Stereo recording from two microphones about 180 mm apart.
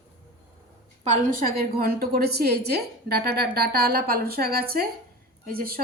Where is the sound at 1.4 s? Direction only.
55° right (ahead or behind).